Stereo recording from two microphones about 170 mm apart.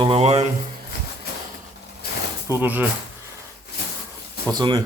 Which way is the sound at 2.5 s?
10° right (ahead or behind).